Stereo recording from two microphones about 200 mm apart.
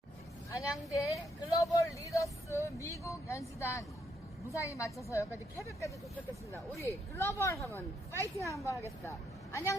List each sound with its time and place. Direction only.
0.5 s a woman's voice: 15° left (ahead or behind)